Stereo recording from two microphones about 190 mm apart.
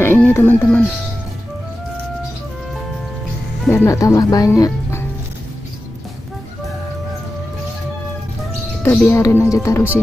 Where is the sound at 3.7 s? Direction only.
15° left (ahead or behind).